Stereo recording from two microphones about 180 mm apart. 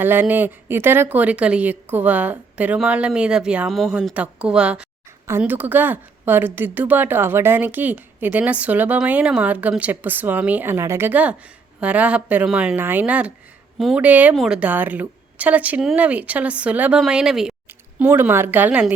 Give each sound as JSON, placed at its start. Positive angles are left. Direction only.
{"t": 0.0, "sound": "speech", "side_deg": -10}